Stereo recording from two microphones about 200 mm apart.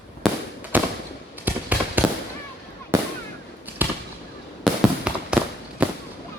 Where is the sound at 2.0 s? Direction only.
Centre (ahead or behind).